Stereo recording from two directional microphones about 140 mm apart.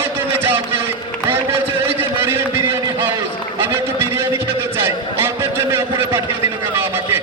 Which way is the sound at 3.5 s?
15° right (ahead or behind).